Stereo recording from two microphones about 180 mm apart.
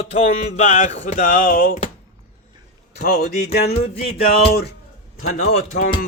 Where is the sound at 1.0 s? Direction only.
50° left (ahead or behind).